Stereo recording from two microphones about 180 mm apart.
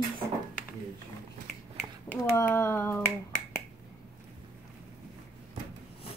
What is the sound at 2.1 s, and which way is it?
Speech, 15° left (ahead or behind).